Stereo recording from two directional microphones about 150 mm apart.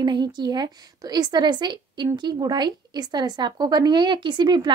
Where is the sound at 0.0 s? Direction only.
30° right (ahead or behind).